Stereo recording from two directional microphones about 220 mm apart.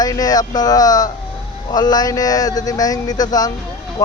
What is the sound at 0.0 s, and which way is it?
Speech, 15° left (ahead or behind).